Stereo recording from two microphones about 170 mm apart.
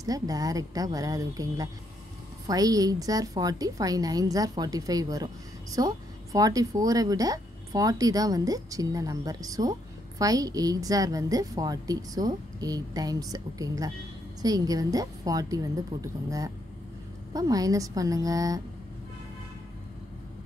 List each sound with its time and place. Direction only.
0.0 s a woman's voice: 20° right (ahead or behind)